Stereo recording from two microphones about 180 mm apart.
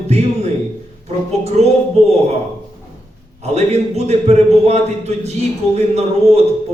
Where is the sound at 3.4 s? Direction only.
35° right (ahead or behind).